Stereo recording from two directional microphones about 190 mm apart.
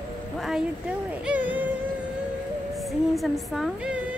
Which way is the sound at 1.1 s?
5° right (ahead or behind).